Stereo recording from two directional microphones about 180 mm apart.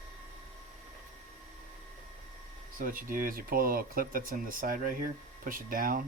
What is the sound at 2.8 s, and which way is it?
Speech, 50° right (ahead or behind).